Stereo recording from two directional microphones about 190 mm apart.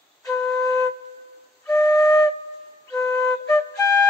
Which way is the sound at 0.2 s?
15° left (ahead or behind).